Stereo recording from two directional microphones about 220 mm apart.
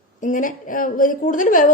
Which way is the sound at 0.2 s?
35° left (ahead or behind).